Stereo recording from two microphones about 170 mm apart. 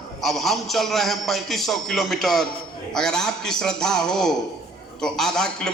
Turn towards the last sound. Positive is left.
turn(degrees=0)  # may be behind; listen again after turning